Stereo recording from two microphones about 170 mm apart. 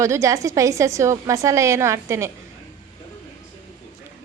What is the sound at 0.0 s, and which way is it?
A woman's voice, 15° right (ahead or behind).